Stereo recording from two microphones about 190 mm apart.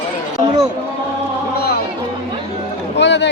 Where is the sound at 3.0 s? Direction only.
65° left (ahead or behind).